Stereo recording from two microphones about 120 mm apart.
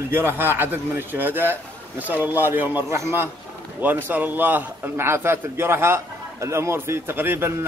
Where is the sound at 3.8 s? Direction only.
15° right (ahead or behind).